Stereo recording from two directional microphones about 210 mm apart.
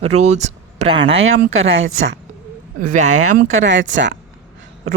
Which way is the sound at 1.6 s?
70° right (ahead or behind).